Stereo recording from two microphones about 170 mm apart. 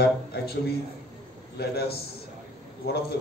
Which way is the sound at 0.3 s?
65° left (ahead or behind).